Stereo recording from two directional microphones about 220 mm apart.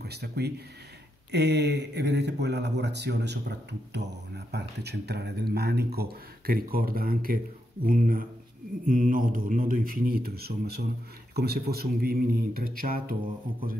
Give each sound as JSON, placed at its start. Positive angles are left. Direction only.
{"t": 0.0, "sound": "speech", "side_deg": -45}